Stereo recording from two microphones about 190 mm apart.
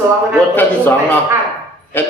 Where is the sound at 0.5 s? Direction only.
10° left (ahead or behind).